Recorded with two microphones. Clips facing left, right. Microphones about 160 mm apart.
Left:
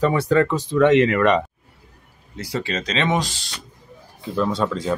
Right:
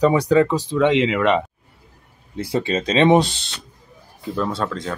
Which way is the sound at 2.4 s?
25° right (ahead or behind).